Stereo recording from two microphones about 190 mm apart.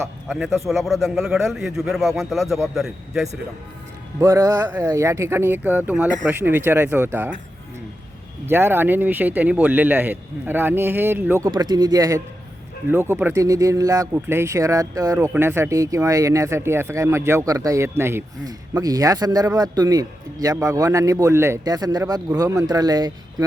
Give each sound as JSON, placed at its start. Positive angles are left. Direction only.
{"t": 0.3, "sound": "a man's voice", "side_deg": 0}
{"t": 4.2, "sound": "speech", "side_deg": -15}
{"t": 8.4, "sound": "speech", "side_deg": -10}